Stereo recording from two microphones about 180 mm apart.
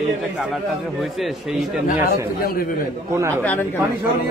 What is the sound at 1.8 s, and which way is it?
Speech, 50° left (ahead or behind).